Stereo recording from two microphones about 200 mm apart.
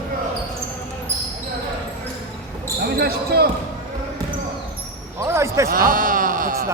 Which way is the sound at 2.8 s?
50° right (ahead or behind).